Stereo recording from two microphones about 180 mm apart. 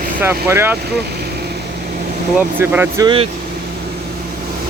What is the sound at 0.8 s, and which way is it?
Vehicle, 60° right (ahead or behind).